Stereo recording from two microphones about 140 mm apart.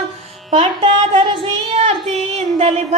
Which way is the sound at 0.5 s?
40° right (ahead or behind).